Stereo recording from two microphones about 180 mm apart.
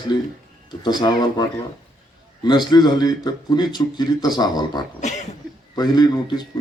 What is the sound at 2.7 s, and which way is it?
Speech, 20° left (ahead or behind).